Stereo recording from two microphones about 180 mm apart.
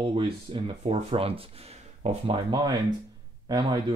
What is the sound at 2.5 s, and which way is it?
A man's voice, 25° right (ahead or behind).